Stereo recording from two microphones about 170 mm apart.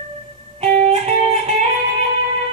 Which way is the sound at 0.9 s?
40° right (ahead or behind).